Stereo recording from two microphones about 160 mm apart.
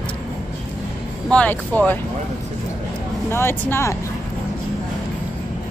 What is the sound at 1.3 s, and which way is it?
Speech, 10° left (ahead or behind).